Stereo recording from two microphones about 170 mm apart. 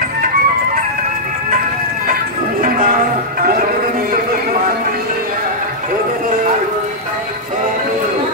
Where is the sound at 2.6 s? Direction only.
55° right (ahead or behind).